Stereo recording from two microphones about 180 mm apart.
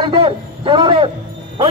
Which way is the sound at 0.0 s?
25° right (ahead or behind).